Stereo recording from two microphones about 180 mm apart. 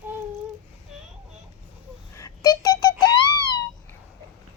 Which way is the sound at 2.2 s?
20° left (ahead or behind).